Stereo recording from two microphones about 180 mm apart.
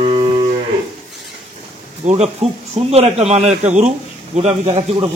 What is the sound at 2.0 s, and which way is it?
A man's voice, 35° right (ahead or behind).